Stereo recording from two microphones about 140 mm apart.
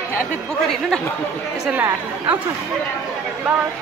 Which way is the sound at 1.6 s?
10° right (ahead or behind).